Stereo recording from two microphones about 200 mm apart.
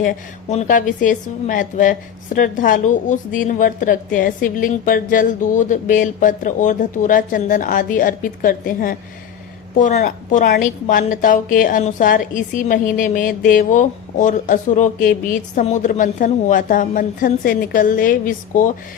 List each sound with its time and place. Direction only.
0.0 s a woman's voice: 40° left (ahead or behind)